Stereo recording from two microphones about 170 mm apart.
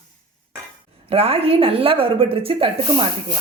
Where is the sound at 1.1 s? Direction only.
35° right (ahead or behind).